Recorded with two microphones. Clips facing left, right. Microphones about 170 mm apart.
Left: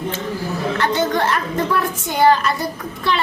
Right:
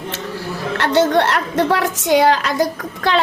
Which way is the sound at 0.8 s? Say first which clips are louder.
Right 6 dB; 70° right (ahead or behind).